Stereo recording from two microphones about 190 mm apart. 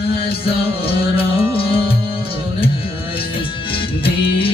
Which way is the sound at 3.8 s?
30° left (ahead or behind).